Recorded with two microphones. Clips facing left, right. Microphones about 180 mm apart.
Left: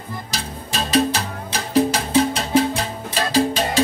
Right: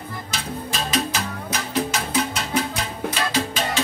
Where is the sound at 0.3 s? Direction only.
35° left (ahead or behind).